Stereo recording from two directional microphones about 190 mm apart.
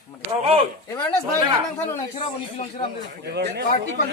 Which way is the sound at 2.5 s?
30° left (ahead or behind).